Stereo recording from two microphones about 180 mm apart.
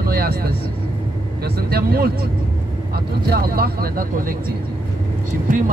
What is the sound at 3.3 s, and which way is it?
Speech, 60° right (ahead or behind).